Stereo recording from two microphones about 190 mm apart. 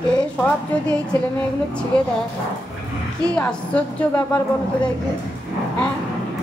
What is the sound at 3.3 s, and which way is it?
Speech, 5° left (ahead or behind).